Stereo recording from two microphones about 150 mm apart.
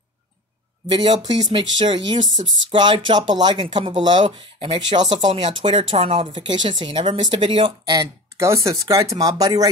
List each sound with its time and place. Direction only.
0.9 s speech: 30° right (ahead or behind)
2.4 s speech: 45° right (ahead or behind)
2.7 s speech: 30° right (ahead or behind)
8.4 s speech: 20° right (ahead or behind)